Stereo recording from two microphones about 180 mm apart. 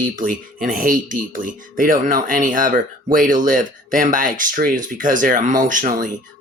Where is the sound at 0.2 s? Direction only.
50° right (ahead or behind).